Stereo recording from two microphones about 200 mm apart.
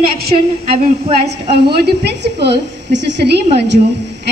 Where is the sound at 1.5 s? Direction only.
55° right (ahead or behind).